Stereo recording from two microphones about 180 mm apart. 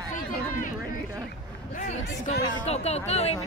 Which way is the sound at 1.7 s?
45° left (ahead or behind).